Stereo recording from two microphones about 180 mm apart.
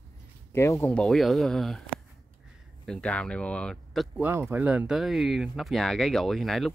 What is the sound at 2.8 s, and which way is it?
Speech, 5° left (ahead or behind).